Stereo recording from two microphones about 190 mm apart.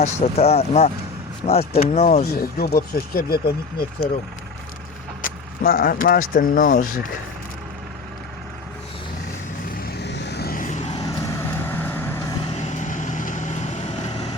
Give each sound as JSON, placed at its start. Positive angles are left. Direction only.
{"t": 0.0, "sound": "speech", "side_deg": 35}
{"t": 2.2, "sound": "speech", "side_deg": 55}
{"t": 5.2, "sound": "speech", "side_deg": 50}
{"t": 9.7, "sound": "vehicle", "side_deg": 55}
{"t": 10.9, "sound": "vehicle", "side_deg": 10}
{"t": 12.5, "sound": "vehicle", "side_deg": 40}